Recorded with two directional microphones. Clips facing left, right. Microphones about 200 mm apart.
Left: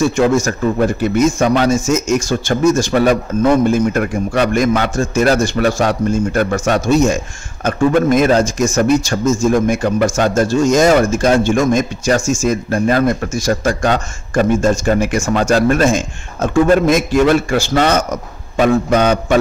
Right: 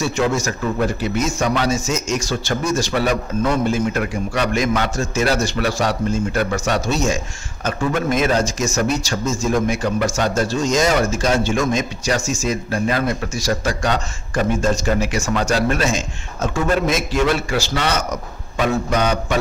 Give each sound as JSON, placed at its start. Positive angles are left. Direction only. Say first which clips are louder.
{"t": 0.0, "sound": "a man's voice", "louder": "left 6 dB", "side_deg": 50}